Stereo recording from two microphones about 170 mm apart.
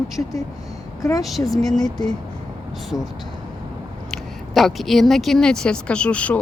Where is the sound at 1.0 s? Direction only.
20° left (ahead or behind).